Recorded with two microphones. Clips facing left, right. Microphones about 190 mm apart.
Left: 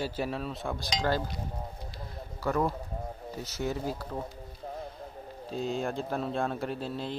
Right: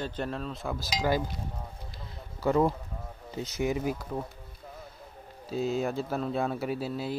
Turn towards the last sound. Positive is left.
turn(degrees=-5)  # may be behind; listen again after turning